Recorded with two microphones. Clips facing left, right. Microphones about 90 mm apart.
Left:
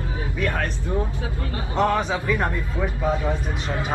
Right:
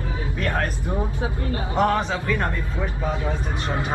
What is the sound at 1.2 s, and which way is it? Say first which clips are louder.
Speech: right 3 dB; 25° right (ahead or behind).